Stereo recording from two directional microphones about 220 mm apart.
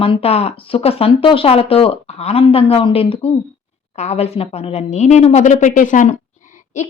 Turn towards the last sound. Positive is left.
turn(degrees=35)  # may be behind; listen again after turning